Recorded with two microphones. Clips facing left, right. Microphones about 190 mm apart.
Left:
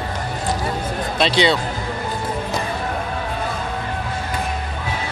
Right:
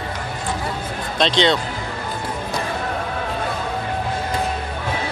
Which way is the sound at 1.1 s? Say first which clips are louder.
Even; 5° left (ahead or behind).